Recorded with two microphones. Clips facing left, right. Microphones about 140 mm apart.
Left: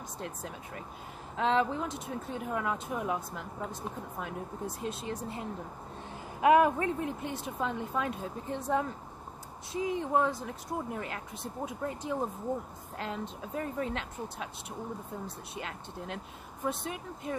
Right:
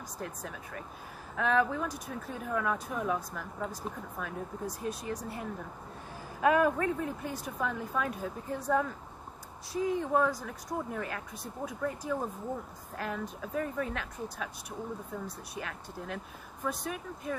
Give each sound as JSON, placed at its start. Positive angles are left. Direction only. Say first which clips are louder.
{"t": 0.2, "sound": "speech", "louder": "even", "side_deg": 25}